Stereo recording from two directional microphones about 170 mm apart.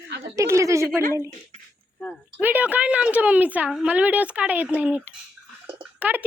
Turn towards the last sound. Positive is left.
turn(degrees=-10)  # may be behind; listen again after turning